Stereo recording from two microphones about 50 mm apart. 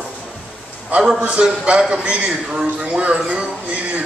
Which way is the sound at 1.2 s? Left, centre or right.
Centre.